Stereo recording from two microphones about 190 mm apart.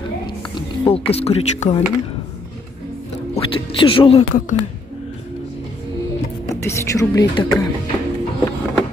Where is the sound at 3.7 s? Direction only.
25° left (ahead or behind).